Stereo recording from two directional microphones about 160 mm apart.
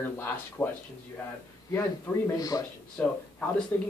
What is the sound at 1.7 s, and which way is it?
Speech, 15° left (ahead or behind).